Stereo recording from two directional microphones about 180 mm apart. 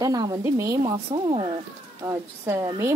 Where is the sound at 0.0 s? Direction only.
20° right (ahead or behind).